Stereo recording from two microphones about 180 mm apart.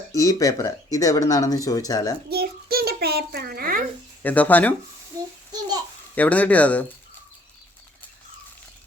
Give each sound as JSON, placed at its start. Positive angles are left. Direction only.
{"t": 0.1, "sound": "speech", "side_deg": 20}
{"t": 2.3, "sound": "a sound", "side_deg": -60}
{"t": 4.2, "sound": "speech", "side_deg": 10}
{"t": 5.5, "sound": "babbling", "side_deg": -20}
{"t": 6.1, "sound": "speech", "side_deg": 10}